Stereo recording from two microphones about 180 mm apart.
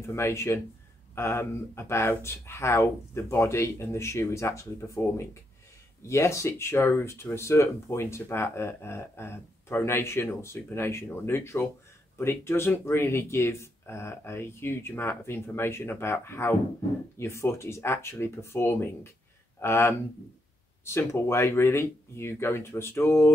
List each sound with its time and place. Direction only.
0.0 s speech: 15° left (ahead or behind)